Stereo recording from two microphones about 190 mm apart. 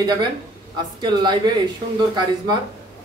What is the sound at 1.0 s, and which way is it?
Speech, 25° right (ahead or behind).